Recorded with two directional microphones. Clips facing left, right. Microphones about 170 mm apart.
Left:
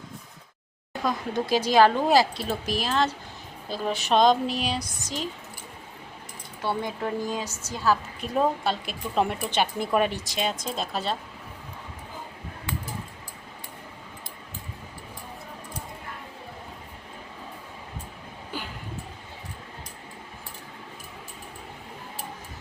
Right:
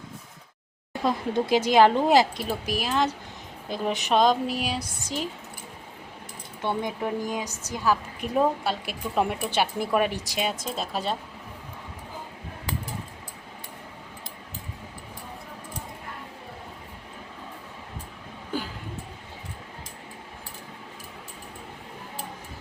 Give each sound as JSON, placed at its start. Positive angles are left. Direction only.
{"t": 1.0, "sound": "speech", "side_deg": -25}
{"t": 2.4, "sound": "a woman's voice", "side_deg": -10}
{"t": 6.6, "sound": "a woman's voice", "side_deg": -15}